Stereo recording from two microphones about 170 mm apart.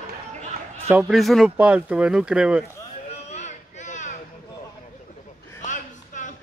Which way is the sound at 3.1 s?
40° left (ahead or behind).